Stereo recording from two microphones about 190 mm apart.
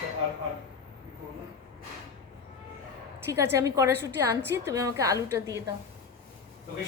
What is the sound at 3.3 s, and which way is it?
A woman's voice, 15° right (ahead or behind).